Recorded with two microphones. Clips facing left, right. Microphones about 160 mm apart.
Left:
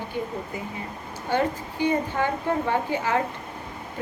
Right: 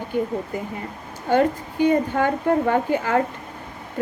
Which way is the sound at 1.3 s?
50° right (ahead or behind).